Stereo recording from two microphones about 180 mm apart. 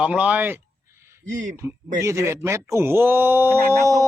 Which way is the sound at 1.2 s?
45° right (ahead or behind).